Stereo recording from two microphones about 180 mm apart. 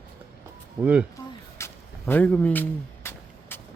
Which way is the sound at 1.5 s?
10° left (ahead or behind).